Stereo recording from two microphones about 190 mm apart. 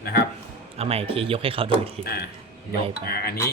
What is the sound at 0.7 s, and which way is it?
A man's voice, 30° right (ahead or behind).